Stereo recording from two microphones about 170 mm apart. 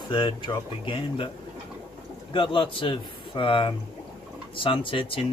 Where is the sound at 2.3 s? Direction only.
30° left (ahead or behind).